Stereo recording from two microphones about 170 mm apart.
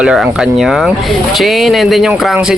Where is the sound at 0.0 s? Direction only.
5° right (ahead or behind).